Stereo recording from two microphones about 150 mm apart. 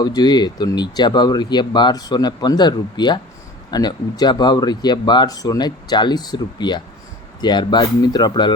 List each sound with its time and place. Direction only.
0.0 s speech: 25° left (ahead or behind)